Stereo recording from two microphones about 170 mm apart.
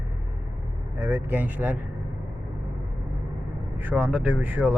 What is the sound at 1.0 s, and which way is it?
Speech, 15° right (ahead or behind).